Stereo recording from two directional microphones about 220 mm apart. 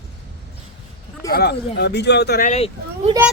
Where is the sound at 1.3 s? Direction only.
45° left (ahead or behind).